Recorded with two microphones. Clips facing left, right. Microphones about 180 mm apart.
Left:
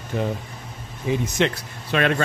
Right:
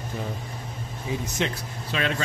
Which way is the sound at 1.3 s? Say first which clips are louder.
Left 6 dB; 70° left (ahead or behind).